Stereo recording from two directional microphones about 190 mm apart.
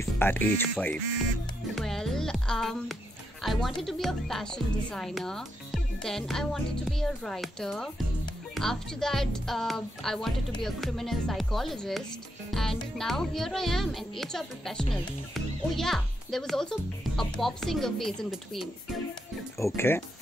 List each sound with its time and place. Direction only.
0.0 s a child's voice: 10° left (ahead or behind)
19.6 s speech: 10° left (ahead or behind)